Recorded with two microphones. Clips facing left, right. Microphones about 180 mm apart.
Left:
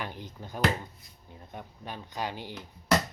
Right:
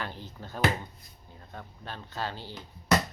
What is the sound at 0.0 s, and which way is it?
Speech, 15° left (ahead or behind).